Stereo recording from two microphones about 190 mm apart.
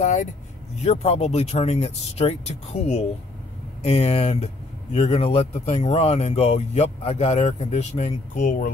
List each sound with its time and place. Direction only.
0.0 s speech: 40° left (ahead or behind)